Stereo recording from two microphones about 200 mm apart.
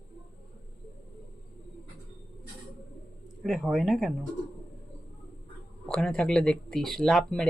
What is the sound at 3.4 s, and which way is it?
Speech, centre (ahead or behind).